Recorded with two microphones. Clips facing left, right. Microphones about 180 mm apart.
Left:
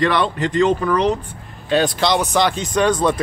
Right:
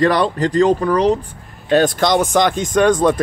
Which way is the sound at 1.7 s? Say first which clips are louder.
Right 3 dB; 50° right (ahead or behind).